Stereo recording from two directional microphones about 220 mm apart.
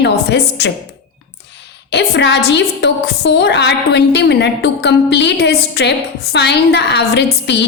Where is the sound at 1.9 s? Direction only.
55° left (ahead or behind).